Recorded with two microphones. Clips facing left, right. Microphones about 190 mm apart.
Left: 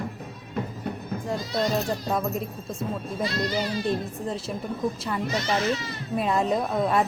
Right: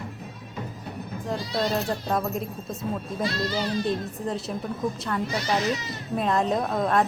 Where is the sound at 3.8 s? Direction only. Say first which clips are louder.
Even; centre (ahead or behind).